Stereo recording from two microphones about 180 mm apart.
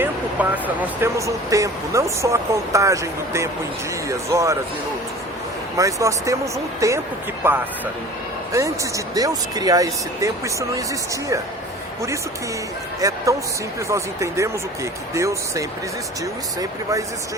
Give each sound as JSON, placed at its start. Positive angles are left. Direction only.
{"t": 0.0, "sound": "speech", "side_deg": -10}
{"t": 5.7, "sound": "speech", "side_deg": -15}
{"t": 13.0, "sound": "speech", "side_deg": -20}